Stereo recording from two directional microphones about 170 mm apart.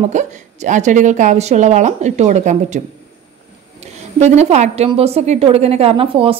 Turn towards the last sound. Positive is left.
turn(degrees=-35)  # may be behind; listen again after turning